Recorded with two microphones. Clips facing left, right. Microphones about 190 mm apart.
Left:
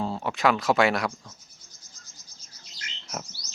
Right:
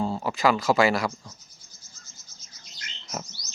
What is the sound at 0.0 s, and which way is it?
Speech, centre (ahead or behind).